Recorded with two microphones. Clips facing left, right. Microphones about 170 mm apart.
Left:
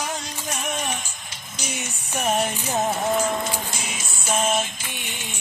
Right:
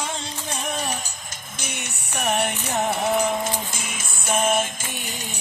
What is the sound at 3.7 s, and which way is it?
Music, 50° right (ahead or behind).